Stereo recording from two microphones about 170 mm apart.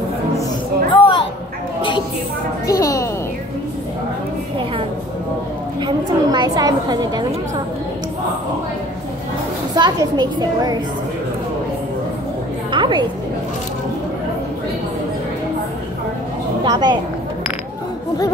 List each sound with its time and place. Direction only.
0.9 s a sound: 30° left (ahead or behind)
2.6 s a sound: 20° left (ahead or behind)
5.8 s a woman's voice: 25° right (ahead or behind)
9.8 s a woman's voice: 25° right (ahead or behind)
12.7 s a woman's voice: 25° right (ahead or behind)
16.6 s a woman's voice: 25° right (ahead or behind)